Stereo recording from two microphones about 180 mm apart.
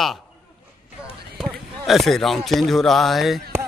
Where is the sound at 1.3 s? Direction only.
Centre (ahead or behind).